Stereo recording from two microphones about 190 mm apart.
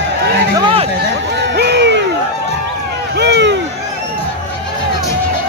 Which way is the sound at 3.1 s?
65° right (ahead or behind).